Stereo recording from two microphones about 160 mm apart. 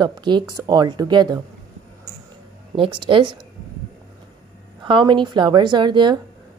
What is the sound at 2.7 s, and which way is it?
Speech, 30° right (ahead or behind).